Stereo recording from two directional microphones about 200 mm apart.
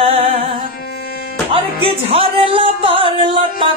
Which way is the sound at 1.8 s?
25° right (ahead or behind).